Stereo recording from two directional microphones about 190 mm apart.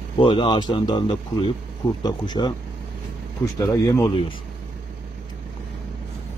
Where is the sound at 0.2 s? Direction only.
25° left (ahead or behind).